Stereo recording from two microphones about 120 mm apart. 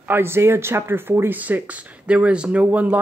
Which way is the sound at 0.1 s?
20° right (ahead or behind).